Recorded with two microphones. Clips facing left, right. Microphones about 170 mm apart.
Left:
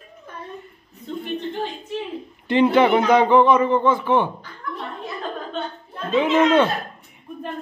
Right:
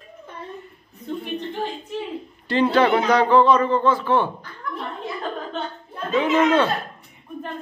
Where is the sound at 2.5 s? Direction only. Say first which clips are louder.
Left 2 dB; 20° left (ahead or behind).